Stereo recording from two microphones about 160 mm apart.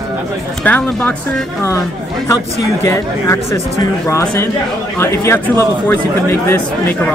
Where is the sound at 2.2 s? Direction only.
20° left (ahead or behind).